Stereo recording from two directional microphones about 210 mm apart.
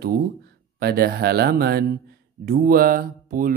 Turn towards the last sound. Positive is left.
turn(degrees=-40)  # may be behind; listen again after turning